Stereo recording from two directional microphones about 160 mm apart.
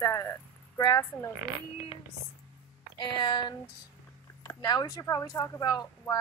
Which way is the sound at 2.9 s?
30° left (ahead or behind).